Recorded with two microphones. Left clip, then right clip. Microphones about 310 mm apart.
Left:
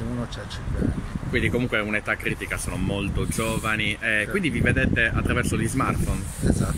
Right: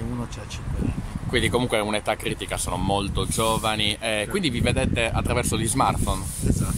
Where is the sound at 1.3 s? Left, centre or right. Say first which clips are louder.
Right 2 dB; centre.